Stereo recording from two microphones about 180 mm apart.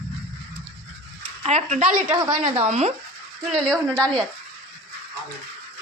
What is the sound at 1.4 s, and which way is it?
Speech, 35° right (ahead or behind).